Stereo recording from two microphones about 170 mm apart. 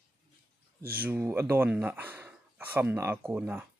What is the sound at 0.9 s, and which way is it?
Speech, 10° right (ahead or behind).